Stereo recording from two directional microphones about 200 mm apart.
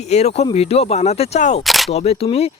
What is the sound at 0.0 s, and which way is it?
Speech, 35° left (ahead or behind).